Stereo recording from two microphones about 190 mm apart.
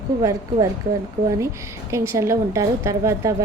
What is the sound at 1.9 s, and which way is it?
A woman's voice, 15° right (ahead or behind).